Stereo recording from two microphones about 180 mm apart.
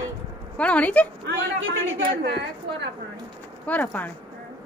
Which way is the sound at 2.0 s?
65° right (ahead or behind).